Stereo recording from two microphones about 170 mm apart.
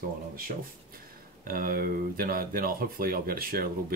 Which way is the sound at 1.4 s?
60° right (ahead or behind).